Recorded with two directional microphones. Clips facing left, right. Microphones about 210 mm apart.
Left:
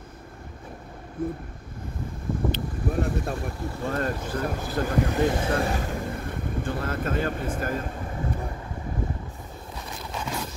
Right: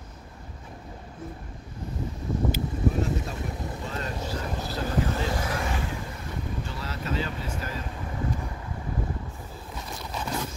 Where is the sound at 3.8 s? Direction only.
50° left (ahead or behind).